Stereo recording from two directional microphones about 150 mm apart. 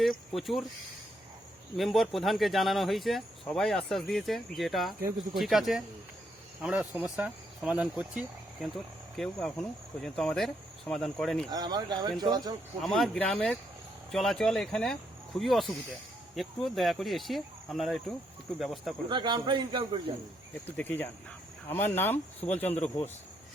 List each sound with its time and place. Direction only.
0.0 s speech: centre (ahead or behind)
1.7 s speech: centre (ahead or behind)
11.5 s speech: 25° right (ahead or behind)
12.8 s speech: centre (ahead or behind)
19.0 s a man's voice: 30° right (ahead or behind)
20.7 s speech: 10° left (ahead or behind)